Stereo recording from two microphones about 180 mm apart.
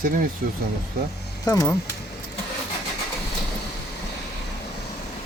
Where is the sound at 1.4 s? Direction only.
20° left (ahead or behind).